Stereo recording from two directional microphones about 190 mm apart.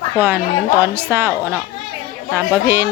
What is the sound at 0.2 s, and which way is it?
A woman's voice, 10° right (ahead or behind).